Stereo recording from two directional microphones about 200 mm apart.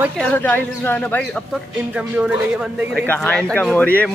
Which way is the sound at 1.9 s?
5° right (ahead or behind).